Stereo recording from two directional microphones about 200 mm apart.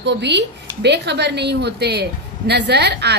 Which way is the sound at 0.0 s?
60° right (ahead or behind).